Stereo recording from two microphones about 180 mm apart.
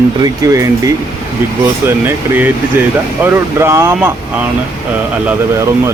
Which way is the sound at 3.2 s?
15° right (ahead or behind).